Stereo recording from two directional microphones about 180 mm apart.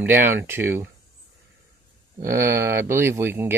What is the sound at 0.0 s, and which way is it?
Speech, 10° right (ahead or behind).